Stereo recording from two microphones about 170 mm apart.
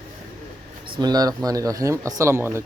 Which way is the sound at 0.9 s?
25° right (ahead or behind).